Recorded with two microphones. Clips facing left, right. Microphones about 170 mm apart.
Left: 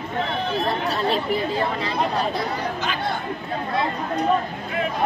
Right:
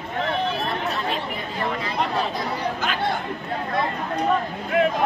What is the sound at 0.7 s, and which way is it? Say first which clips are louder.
Chatter: left 3 dB; 35° left (ahead or behind).